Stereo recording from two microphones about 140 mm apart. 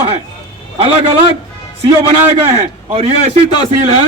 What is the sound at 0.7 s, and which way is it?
Speech, 45° right (ahead or behind).